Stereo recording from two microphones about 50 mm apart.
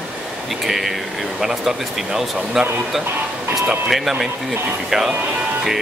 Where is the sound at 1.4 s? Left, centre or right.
Centre.